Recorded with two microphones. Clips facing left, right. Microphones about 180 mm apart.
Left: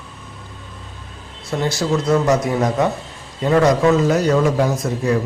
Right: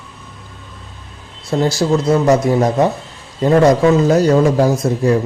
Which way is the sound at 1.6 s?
35° right (ahead or behind).